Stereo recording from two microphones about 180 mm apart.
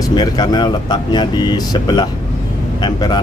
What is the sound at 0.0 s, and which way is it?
Speech, 25° left (ahead or behind).